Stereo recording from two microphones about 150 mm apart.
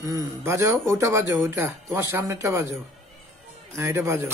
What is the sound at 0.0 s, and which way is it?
A man's voice, 20° right (ahead or behind).